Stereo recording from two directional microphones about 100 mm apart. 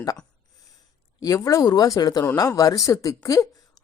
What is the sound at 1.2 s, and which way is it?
A woman's voice, 35° left (ahead or behind).